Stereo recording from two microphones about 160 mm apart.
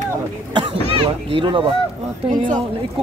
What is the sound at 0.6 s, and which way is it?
Speech, 30° right (ahead or behind).